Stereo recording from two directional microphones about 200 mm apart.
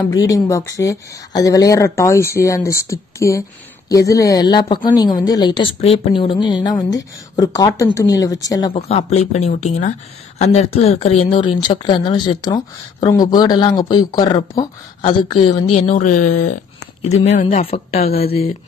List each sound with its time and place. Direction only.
0.1 s a woman's voice: 15° left (ahead or behind)
8.8 s a woman's voice: 30° left (ahead or behind)